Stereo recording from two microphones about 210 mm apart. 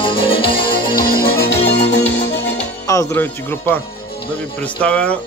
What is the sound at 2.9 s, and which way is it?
A man's voice, 15° left (ahead or behind).